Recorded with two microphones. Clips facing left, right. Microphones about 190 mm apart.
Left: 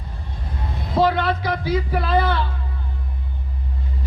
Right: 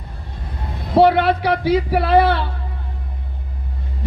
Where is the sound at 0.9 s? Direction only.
65° right (ahead or behind).